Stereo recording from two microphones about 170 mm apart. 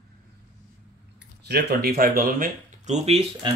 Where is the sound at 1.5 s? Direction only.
70° right (ahead or behind).